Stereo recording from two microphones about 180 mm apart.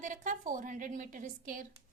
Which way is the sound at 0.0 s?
45° right (ahead or behind).